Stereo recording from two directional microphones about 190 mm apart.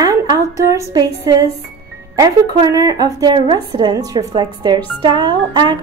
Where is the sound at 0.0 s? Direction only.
20° right (ahead or behind).